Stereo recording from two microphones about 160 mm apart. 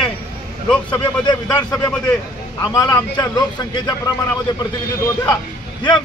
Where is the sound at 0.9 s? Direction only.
25° left (ahead or behind).